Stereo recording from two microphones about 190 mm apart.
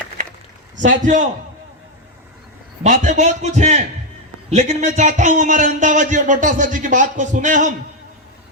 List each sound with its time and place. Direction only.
0.8 s a man's voice: 40° right (ahead or behind)
2.8 s a man's voice: 40° right (ahead or behind)